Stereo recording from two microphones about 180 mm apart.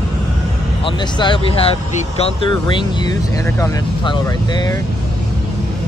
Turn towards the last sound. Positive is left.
turn(degrees=20)  # may be behind; listen again after turning